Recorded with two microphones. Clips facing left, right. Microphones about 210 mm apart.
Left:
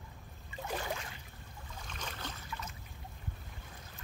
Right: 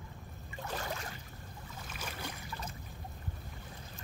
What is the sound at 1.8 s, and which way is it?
Boat, 5° right (ahead or behind).